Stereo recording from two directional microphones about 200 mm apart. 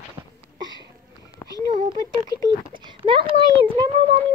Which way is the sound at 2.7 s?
25° right (ahead or behind).